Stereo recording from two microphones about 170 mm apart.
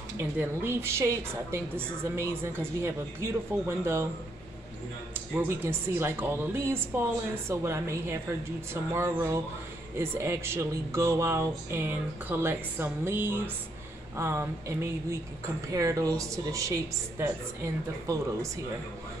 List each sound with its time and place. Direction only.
0.4 s a woman's voice: 15° right (ahead or behind)
5.3 s a woman's voice: 10° right (ahead or behind)